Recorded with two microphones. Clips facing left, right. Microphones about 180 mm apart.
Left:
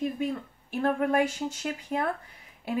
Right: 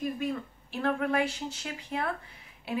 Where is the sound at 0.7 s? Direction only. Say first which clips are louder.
Left 3 dB; 45° left (ahead or behind).